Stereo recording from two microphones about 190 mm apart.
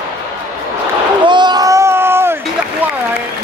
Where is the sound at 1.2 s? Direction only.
25° right (ahead or behind).